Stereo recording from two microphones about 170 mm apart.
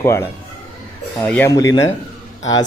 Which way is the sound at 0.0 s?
15° left (ahead or behind).